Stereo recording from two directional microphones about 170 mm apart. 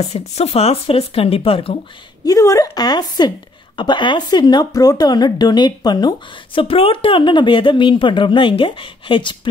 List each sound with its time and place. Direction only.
0.0 s speech: 40° left (ahead or behind)
2.2 s a woman's voice: 20° left (ahead or behind)